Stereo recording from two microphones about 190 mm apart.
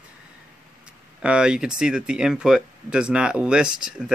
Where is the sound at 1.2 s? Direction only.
5° right (ahead or behind).